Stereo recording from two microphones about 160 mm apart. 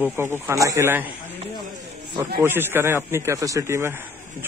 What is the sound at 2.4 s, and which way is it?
Speech, 15° right (ahead or behind).